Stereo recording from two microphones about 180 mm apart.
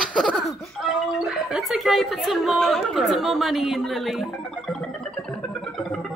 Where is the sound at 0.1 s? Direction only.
Centre (ahead or behind).